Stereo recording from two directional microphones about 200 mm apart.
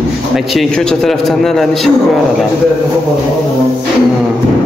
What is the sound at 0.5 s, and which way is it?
A man's voice, centre (ahead or behind).